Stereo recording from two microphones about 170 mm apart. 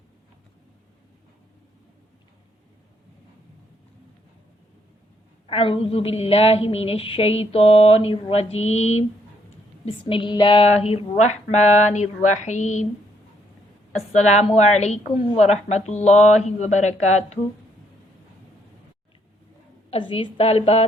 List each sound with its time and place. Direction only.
5.5 s a woman's voice: 30° left (ahead or behind)
14.1 s a woman's voice: 40° left (ahead or behind)
19.9 s a woman's voice: 35° left (ahead or behind)